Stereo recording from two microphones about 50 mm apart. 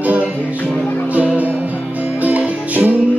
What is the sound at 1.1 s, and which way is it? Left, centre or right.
Music, right.